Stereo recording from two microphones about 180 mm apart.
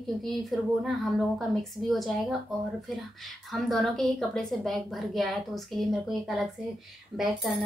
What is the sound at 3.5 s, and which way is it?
A woman's voice, centre (ahead or behind).